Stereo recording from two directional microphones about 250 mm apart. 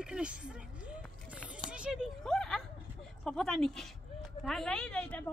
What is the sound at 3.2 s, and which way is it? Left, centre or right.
Speech, centre.